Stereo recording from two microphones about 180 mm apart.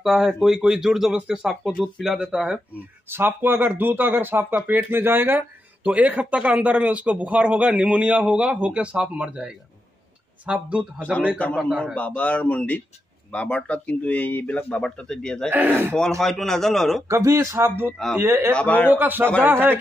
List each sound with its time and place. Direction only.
0.0 s speech: centre (ahead or behind)
11.0 s speech: 5° left (ahead or behind)
15.5 s speech: 10° right (ahead or behind)
16.2 s speech: centre (ahead or behind)
17.1 s speech: 15° right (ahead or behind)
18.5 s speech: 5° left (ahead or behind)
18.9 s speech: 10° right (ahead or behind)